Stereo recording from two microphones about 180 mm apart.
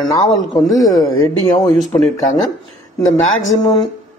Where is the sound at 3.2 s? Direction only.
90° left.